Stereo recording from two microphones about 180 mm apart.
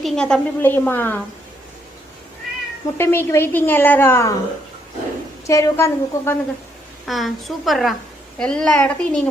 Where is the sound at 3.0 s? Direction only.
15° left (ahead or behind).